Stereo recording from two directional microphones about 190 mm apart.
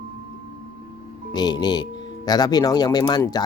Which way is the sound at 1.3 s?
20° left (ahead or behind).